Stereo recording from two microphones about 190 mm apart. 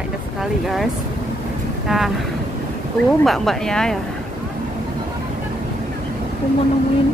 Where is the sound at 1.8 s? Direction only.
Centre (ahead or behind).